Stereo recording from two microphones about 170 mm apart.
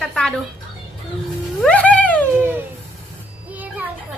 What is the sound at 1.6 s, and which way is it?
Music, 5° left (ahead or behind).